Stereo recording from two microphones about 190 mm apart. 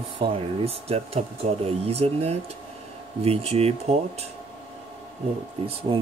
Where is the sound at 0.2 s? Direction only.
30° right (ahead or behind).